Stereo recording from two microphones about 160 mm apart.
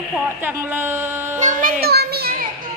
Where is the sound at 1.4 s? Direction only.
55° right (ahead or behind); by 2.3 s 80° right.